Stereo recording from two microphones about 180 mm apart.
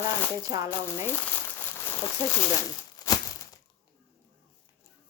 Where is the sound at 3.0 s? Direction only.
20° left (ahead or behind).